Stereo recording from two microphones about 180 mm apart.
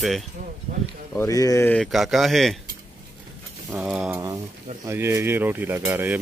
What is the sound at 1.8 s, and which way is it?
Speech, centre (ahead or behind).